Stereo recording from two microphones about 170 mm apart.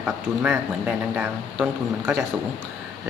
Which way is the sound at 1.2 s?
10° right (ahead or behind).